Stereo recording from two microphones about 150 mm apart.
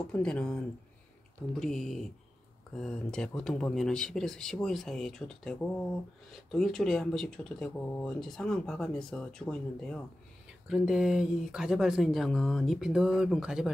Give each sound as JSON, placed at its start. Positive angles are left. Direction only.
{"t": 0.0, "sound": "speech", "side_deg": 5}